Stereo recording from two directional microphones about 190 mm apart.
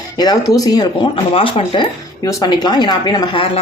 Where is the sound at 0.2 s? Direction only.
20° left (ahead or behind).